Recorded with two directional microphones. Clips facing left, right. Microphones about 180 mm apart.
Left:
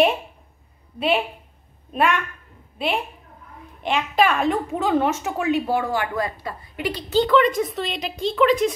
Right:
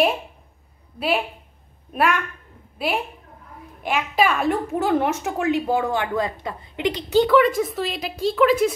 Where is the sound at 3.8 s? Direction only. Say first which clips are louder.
Left 1 dB; 5° right (ahead or behind).